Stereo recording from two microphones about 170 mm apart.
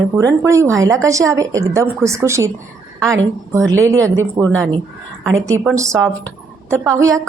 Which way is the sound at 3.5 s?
15° right (ahead or behind).